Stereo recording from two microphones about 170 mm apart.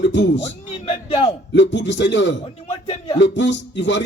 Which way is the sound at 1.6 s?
90° left.